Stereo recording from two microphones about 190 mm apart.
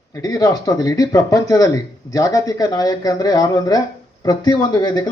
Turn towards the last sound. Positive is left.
turn(degrees=20)  # may be behind; listen again after turning